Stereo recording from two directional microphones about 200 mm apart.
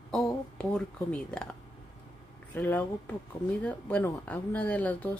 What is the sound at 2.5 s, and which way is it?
Speech, 10° left (ahead or behind).